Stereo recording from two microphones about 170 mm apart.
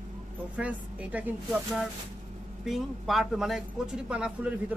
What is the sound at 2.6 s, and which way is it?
A man's voice, centre (ahead or behind).